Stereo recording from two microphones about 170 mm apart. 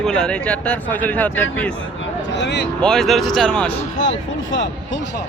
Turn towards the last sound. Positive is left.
turn(degrees=90)